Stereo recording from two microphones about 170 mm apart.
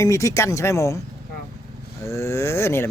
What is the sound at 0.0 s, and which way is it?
Speech, 20° left (ahead or behind).